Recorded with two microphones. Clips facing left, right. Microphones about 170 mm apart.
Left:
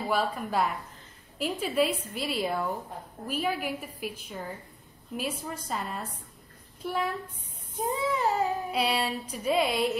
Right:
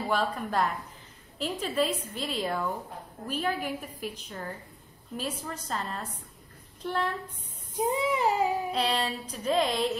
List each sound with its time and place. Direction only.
0.1 s a woman's voice: 5° left (ahead or behind)
7.9 s child singing: 15° right (ahead or behind)
8.7 s a woman's voice: 10° left (ahead or behind)